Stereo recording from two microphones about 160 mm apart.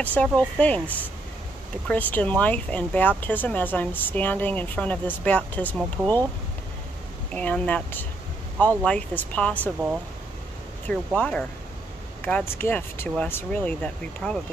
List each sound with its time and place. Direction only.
0.0 s speech: 10° left (ahead or behind)
7.3 s speech: 10° left (ahead or behind)
10.9 s speech: 5° left (ahead or behind)